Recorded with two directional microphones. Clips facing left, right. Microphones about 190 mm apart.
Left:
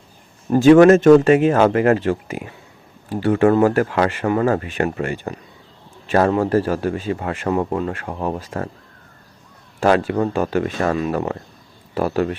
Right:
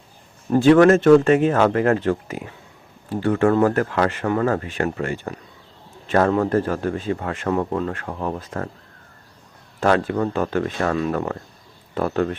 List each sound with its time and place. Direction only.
0.5 s a man's voice: 15° left (ahead or behind)
9.8 s a man's voice: 10° left (ahead or behind)